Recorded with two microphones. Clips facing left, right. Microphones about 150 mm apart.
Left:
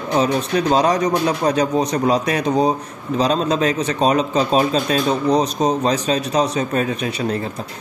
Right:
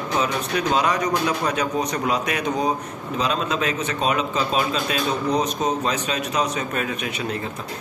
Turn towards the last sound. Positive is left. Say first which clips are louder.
# left 5 dB
turn(degrees=35)  # may be behind; listen again after turning